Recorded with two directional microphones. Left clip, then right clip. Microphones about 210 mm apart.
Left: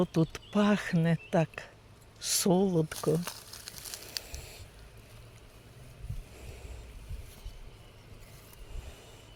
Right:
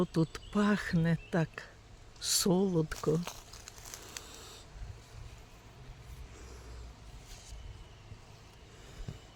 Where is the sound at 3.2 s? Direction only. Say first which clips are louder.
Left 3 dB; 35° left (ahead or behind).